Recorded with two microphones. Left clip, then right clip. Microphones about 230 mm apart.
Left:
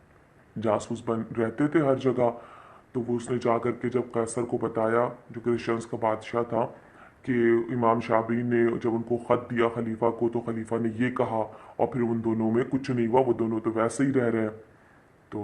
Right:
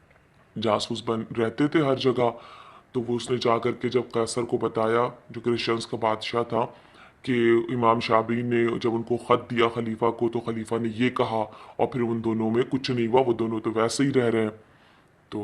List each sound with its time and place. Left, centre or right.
0.6 s a man's voice: right